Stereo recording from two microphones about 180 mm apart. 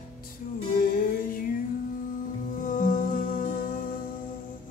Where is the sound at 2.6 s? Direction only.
50° left (ahead or behind).